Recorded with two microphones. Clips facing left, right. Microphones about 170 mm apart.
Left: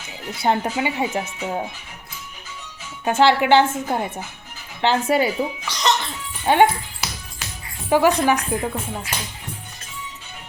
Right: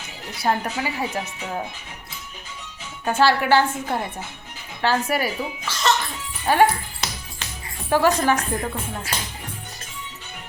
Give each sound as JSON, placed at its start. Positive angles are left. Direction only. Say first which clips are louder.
{"t": 0.4, "sound": "speech", "louder": "left 3 dB", "side_deg": 20}
{"t": 3.0, "sound": "speech", "louder": "left 3 dB", "side_deg": 20}
{"t": 7.9, "sound": "speech", "louder": "left 2 dB", "side_deg": 15}